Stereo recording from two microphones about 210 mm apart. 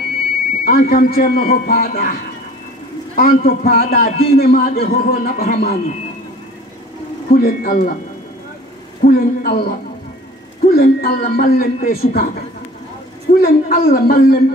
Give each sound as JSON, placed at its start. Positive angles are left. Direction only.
{"t": 0.7, "sound": "a man's voice", "side_deg": 45}
{"t": 3.2, "sound": "a man's voice", "side_deg": 45}
{"t": 7.3, "sound": "speech", "side_deg": 40}
{"t": 9.0, "sound": "a man's voice", "side_deg": 45}
{"t": 13.4, "sound": "a man's voice", "side_deg": 45}